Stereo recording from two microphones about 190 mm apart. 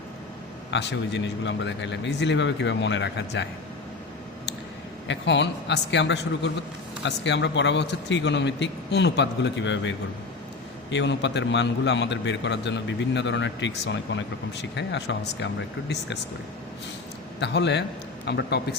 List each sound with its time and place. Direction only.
0.7 s a man's voice: 65° left (ahead or behind)
5.0 s a man's voice: 65° left (ahead or behind)
10.9 s a man's voice: 70° left (ahead or behind)
17.4 s a man's voice: 65° left (ahead or behind)